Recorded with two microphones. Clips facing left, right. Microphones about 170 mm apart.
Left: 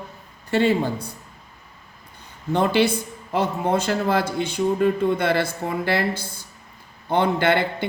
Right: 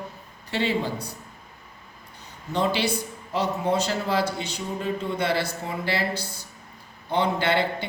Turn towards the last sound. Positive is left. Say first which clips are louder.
# left 3 dB
turn(degrees=55)  # may be behind; listen again after turning